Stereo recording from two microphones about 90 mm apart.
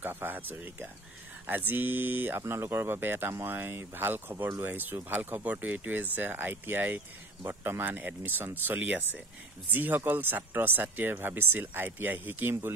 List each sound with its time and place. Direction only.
0.0 s speech: 20° right (ahead or behind)